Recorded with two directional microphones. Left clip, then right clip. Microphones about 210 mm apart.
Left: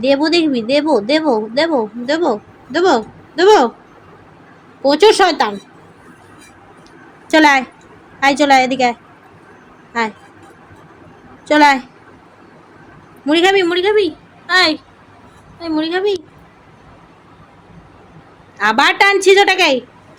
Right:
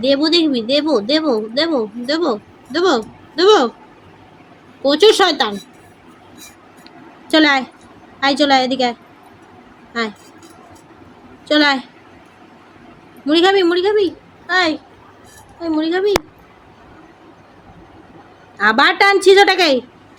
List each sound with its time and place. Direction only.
0.0 s speech: centre (ahead or behind)
4.8 s speech: centre (ahead or behind)
7.3 s a woman's voice: centre (ahead or behind)
11.4 s speech: centre (ahead or behind)
13.2 s a woman's voice: centre (ahead or behind)
18.5 s speech: centre (ahead or behind)